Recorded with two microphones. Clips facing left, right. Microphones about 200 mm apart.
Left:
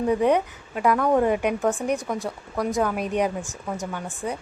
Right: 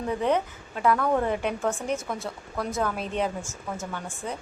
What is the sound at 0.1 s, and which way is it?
A woman's voice, 15° left (ahead or behind).